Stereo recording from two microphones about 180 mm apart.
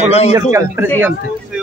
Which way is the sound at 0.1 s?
35° left (ahead or behind).